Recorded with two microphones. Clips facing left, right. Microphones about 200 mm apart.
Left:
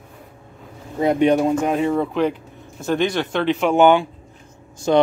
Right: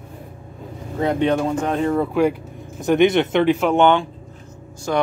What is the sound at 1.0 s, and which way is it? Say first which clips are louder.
Speech: left 3 dB; 15° left (ahead or behind).